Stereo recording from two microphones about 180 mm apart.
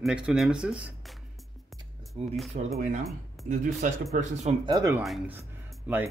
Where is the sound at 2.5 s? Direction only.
50° right (ahead or behind).